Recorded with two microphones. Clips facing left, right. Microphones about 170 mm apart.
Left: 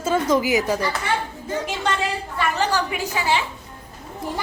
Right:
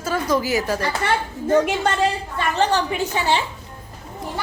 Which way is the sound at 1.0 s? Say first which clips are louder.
Right 3 dB; 70° right (ahead or behind).